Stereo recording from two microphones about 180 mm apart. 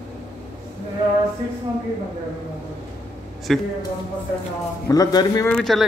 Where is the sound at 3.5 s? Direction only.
Centre (ahead or behind).